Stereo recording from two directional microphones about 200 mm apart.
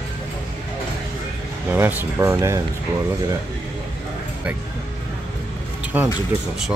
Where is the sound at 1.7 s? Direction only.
10° right (ahead or behind).